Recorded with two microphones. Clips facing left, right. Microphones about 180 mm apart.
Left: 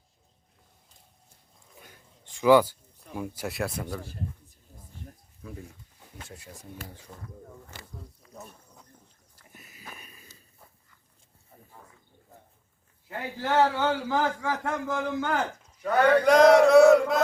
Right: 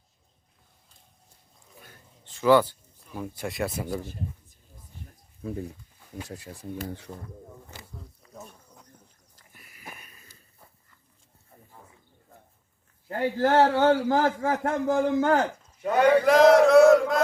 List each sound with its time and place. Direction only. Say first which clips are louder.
1.8 s a sound: even; 15° left (ahead or behind); by 3.9 s centre (ahead or behind)
5.4 s a man's voice: right 9 dB; 35° right (ahead or behind)
8.3 s insect: right 2 dB; centre (ahead or behind)
9.3 s a sound: left 5 dB; 20° left (ahead or behind)
13.1 s a man's voice: right 7 dB; 45° right (ahead or behind)
15.8 s a man's voice: right 1 dB; 15° right (ahead or behind)
16.2 s chant: left 1 dB; centre (ahead or behind)